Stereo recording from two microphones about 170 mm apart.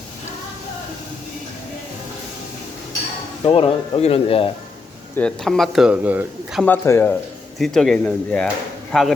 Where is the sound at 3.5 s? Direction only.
30° left (ahead or behind).